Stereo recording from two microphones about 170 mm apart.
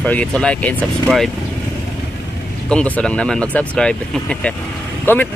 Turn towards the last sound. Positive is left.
turn(degrees=10)  # may be behind; listen again after turning